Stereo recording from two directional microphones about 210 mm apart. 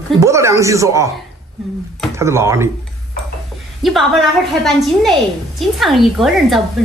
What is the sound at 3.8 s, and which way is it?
A woman's voice, centre (ahead or behind).